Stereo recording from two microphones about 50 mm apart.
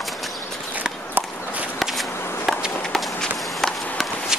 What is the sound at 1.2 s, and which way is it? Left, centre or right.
Walk, right.